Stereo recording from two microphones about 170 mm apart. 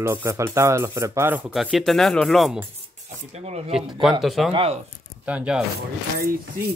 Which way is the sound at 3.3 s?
40° right (ahead or behind).